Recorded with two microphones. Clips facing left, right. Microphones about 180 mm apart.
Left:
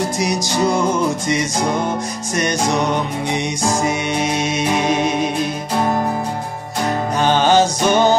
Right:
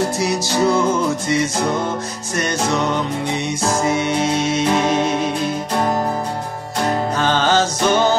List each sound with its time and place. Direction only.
0.2 s music: 15° left (ahead or behind)
2.3 s music: 15° left (ahead or behind)
7.2 s music: 15° left (ahead or behind)